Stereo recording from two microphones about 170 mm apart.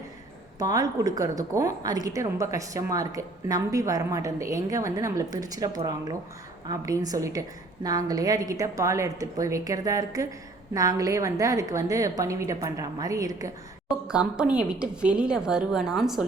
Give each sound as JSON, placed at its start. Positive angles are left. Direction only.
{"t": 0.6, "sound": "a woman's voice", "side_deg": -20}
{"t": 14.1, "sound": "a woman's voice", "side_deg": -5}